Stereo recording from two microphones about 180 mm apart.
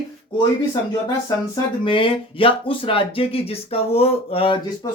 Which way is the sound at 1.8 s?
30° left (ahead or behind).